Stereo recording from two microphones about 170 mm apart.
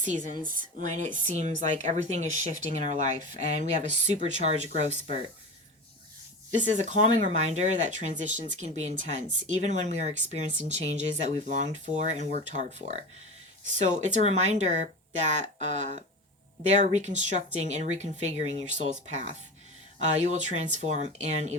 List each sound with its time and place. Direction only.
0.0 s speech: 45° right (ahead or behind)
6.6 s speech: 45° right (ahead or behind)